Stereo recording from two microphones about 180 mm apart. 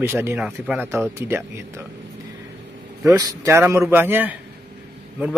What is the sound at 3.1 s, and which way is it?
Speech, 20° right (ahead or behind).